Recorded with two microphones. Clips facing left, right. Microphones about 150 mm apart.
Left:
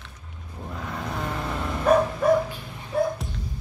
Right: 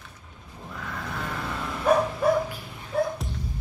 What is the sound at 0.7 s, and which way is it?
Vehicle, 25° left (ahead or behind).